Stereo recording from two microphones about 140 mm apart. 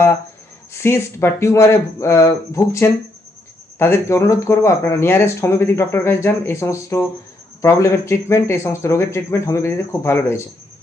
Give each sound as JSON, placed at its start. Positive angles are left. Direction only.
{"t": 0.7, "sound": "speech", "side_deg": 15}